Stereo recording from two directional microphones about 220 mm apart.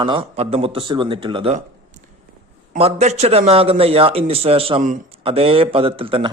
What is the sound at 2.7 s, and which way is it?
Speech, 30° right (ahead or behind).